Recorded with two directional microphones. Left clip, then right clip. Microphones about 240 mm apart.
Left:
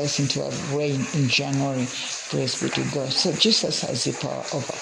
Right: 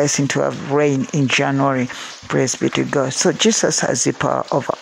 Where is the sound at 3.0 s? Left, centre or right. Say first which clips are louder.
Right 4 dB; right.